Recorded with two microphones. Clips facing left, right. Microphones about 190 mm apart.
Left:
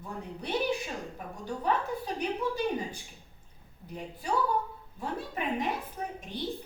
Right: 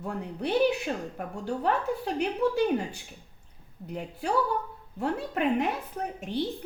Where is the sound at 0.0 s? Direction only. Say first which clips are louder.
Right 7 dB; 65° right (ahead or behind).